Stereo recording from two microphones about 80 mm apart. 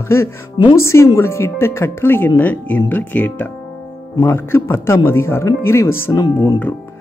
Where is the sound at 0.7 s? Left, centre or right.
Left; by 3.5 s centre.